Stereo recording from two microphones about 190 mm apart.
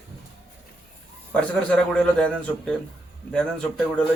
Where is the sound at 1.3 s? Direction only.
5° left (ahead or behind).